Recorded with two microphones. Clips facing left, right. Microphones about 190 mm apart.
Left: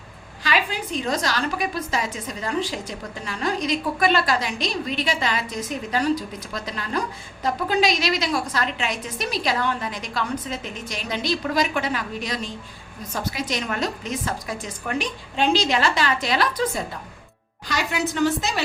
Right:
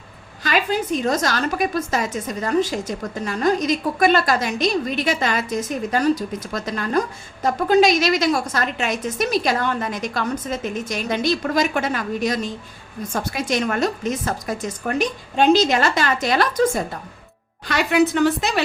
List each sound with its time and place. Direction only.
0.4 s a woman's voice: 45° right (ahead or behind)
17.7 s a woman's voice: 60° right (ahead or behind)